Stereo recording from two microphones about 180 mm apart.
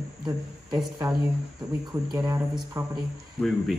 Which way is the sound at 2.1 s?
15° right (ahead or behind).